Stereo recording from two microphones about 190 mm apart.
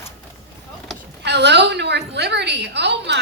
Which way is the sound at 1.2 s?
65° right (ahead or behind).